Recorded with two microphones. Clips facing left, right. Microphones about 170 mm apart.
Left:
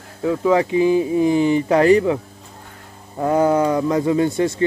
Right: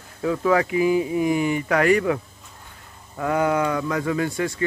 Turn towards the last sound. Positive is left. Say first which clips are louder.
# left 6 dB
turn(degrees=25)  # may be behind; listen again after turning